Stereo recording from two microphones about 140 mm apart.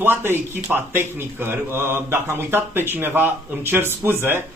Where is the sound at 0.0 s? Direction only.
15° right (ahead or behind).